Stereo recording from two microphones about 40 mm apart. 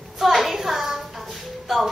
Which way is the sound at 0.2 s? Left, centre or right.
Centre.